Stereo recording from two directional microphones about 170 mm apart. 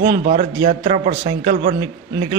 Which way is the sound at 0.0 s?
65° right (ahead or behind).